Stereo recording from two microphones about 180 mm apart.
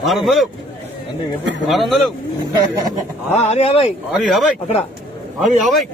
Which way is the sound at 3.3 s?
35° left (ahead or behind).